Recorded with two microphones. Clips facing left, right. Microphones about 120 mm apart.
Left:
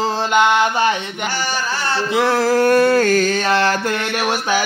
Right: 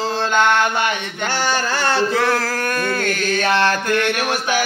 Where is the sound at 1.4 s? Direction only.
60° right (ahead or behind).